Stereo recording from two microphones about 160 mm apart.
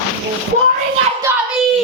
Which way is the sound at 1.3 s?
15° right (ahead or behind).